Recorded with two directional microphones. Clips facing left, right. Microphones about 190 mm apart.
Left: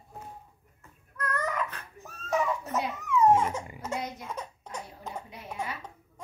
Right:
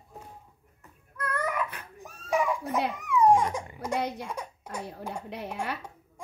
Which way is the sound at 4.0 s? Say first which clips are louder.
Right 6 dB; 70° right (ahead or behind).